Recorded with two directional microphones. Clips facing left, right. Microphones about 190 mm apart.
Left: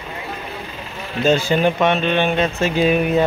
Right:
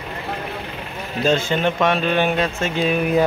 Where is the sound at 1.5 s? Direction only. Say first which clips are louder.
Left 2 dB; 5° left (ahead or behind).